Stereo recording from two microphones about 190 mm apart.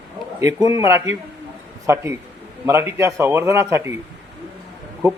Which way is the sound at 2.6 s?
15° right (ahead or behind).